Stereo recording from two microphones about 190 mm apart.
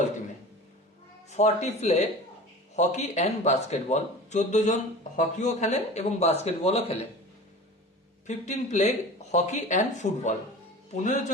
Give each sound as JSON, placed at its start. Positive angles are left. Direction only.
{"t": 1.3, "sound": "speech", "side_deg": 35}
{"t": 8.3, "sound": "speech", "side_deg": 35}